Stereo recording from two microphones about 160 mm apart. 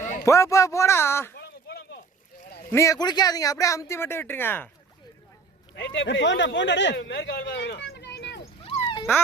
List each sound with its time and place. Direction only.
0.3 s speech: 20° left (ahead or behind)
1.4 s a sound: 90° left
2.7 s speech: 20° left (ahead or behind)
5.7 s speech: 90° left
8.6 s cat: 35° left (ahead or behind)